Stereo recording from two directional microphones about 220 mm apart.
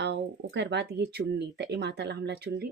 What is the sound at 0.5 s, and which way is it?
Speech, 50° right (ahead or behind).